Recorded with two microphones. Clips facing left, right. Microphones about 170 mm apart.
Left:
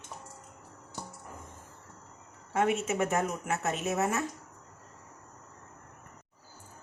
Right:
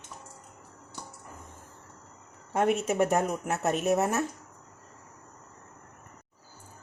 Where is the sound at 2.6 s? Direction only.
Centre (ahead or behind).